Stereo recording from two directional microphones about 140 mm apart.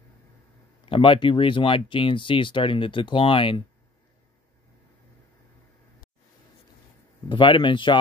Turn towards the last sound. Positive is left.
turn(degrees=35)  # may be behind; listen again after turning